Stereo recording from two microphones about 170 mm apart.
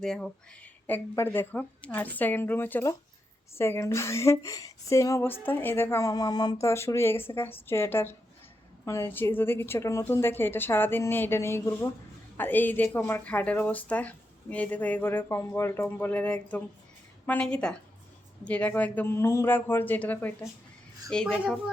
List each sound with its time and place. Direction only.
0.0 s a woman's voice: 5° left (ahead or behind)